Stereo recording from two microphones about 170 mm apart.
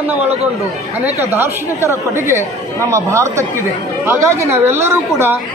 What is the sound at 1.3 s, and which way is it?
A man's voice, 15° right (ahead or behind).